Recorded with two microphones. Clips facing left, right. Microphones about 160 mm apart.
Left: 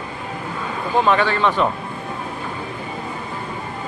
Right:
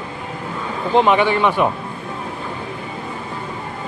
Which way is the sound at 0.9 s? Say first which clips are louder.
Right 3 dB; 20° right (ahead or behind).